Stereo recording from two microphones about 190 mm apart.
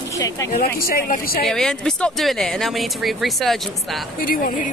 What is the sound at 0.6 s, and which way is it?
Speech, 50° left (ahead or behind).